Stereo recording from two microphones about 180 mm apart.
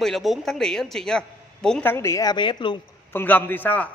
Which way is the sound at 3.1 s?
10° left (ahead or behind).